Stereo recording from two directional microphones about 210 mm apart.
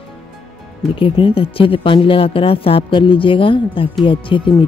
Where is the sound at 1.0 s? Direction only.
25° left (ahead or behind).